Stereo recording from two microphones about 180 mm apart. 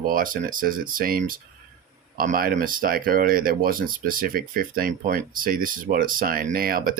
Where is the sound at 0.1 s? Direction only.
50° right (ahead or behind).